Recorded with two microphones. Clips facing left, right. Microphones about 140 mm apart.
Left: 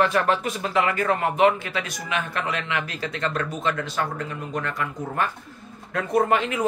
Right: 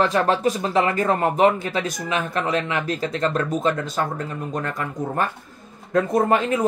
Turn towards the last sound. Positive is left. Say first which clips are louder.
# right 2 dB
turn(degrees=-35)  # may be behind; listen again after turning